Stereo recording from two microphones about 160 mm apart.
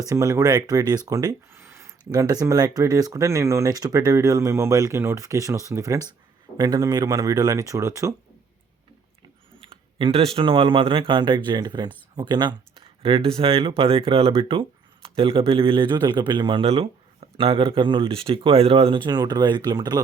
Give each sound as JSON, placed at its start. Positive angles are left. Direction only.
{"t": 0.0, "sound": "speech", "side_deg": -20}
{"t": 10.0, "sound": "speech", "side_deg": -35}